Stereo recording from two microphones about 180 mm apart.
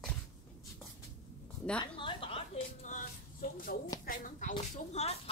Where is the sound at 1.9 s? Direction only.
30° left (ahead or behind).